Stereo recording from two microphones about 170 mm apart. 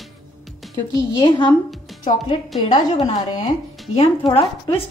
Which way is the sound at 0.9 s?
25° left (ahead or behind).